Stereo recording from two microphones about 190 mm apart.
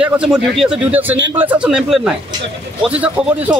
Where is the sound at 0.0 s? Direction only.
5° right (ahead or behind).